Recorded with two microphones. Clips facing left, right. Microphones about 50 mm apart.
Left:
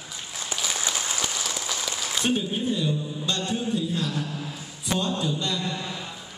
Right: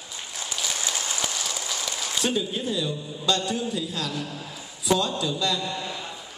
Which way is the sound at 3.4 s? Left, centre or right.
Right.